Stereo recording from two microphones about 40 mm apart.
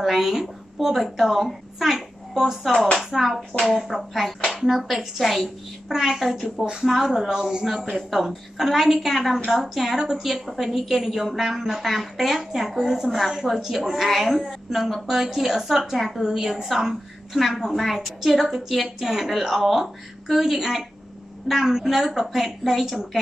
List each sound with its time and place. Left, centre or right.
0.0 s a woman's voice: centre
4.5 s a sound: centre
4.7 s a woman's voice: centre
6.6 s speech: centre
6.9 s a woman's voice: centre
16.2 s a woman's voice: centre